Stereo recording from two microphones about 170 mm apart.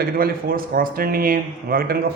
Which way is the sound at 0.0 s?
60° right (ahead or behind).